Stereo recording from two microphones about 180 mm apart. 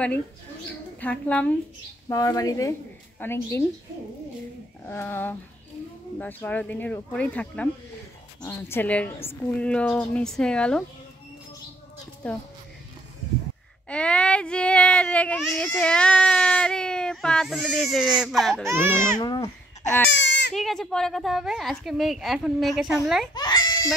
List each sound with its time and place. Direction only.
1.0 s a woman's voice: 10° left (ahead or behind)
4.8 s a woman's voice: 10° left (ahead or behind)
13.8 s a woman's voice: 5° left (ahead or behind)
18.7 s speech: 10° right (ahead or behind)
19.1 s speech: 25° left (ahead or behind)
20.1 s goat: 80° left
20.5 s a woman's voice: centre (ahead or behind)
23.3 s goat: 25° left (ahead or behind)